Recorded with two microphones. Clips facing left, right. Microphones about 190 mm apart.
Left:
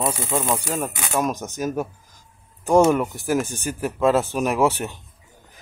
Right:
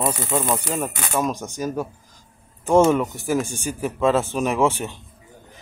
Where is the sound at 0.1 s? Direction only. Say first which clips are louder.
Right 1 dB; 10° left (ahead or behind).